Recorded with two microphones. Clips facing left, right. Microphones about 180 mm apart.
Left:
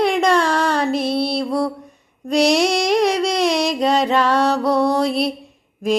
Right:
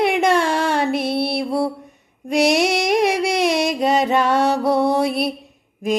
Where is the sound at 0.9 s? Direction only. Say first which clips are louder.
Left 1 dB; 55° right (ahead or behind).